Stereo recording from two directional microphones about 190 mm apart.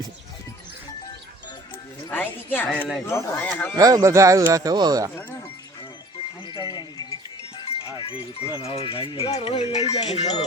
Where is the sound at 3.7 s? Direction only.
20° right (ahead or behind).